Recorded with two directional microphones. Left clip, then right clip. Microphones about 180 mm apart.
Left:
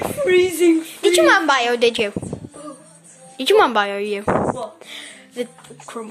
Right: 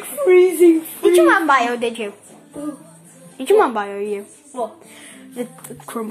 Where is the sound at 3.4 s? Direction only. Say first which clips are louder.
Left 1 dB; 45° left (ahead or behind).